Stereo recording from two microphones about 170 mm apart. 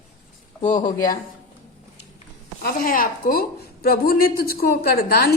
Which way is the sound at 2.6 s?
55° left (ahead or behind).